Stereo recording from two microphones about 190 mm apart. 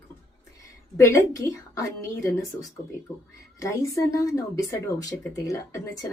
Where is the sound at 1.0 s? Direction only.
15° left (ahead or behind).